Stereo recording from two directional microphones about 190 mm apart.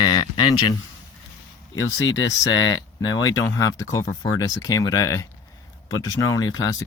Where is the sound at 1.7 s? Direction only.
90° left.